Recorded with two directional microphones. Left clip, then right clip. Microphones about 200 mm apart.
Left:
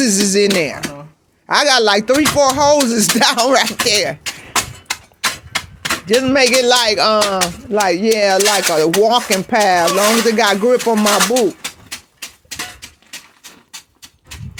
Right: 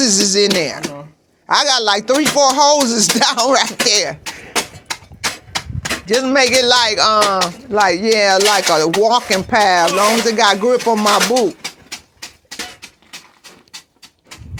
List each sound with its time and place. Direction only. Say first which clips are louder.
0.0 s speech: right 1 dB; 40° left (ahead or behind)
6.1 s speech: even; 40° left (ahead or behind)